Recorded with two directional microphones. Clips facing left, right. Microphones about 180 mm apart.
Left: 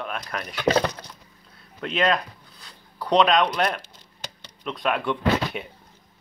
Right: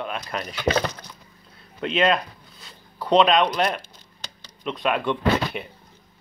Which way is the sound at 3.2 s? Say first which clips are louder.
Right 1 dB; centre (ahead or behind).